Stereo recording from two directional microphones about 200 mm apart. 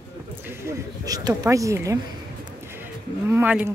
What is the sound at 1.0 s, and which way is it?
Speech, 20° right (ahead or behind).